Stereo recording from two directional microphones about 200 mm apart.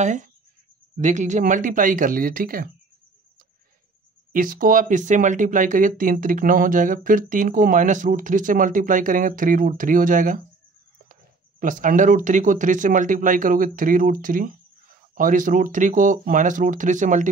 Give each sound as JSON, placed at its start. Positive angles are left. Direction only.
{"t": 0.0, "sound": "speech", "side_deg": -35}
{"t": 4.3, "sound": "speech", "side_deg": -45}
{"t": 11.6, "sound": "speech", "side_deg": -40}